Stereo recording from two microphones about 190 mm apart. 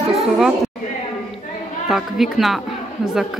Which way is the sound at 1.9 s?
Centre (ahead or behind).